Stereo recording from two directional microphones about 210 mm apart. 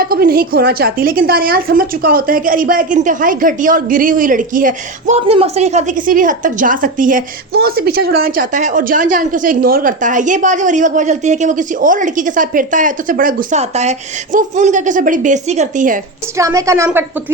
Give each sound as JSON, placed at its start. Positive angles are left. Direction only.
{"t": 0.0, "sound": "a woman's voice", "side_deg": -45}
{"t": 16.4, "sound": "a woman's voice", "side_deg": -15}